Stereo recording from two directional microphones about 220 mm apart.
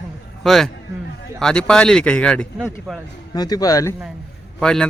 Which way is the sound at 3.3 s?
15° left (ahead or behind).